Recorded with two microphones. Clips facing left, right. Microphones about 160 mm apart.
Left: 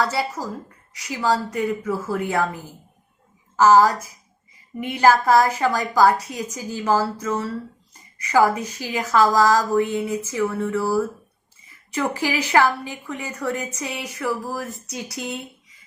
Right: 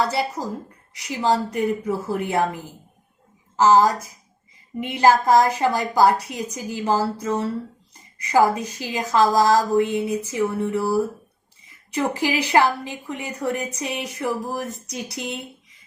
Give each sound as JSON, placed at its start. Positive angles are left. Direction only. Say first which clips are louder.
{"t": 0.0, "sound": "a woman's voice", "louder": "right 1 dB", "side_deg": -20}
{"t": 3.6, "sound": "a woman's voice", "louder": "left 1 dB", "side_deg": -20}